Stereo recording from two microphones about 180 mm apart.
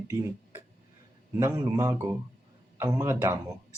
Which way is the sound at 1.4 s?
15° right (ahead or behind).